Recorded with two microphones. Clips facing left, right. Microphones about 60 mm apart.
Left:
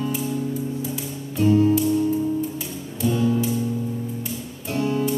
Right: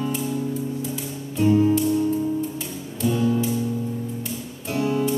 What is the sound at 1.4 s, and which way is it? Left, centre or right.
Music, centre.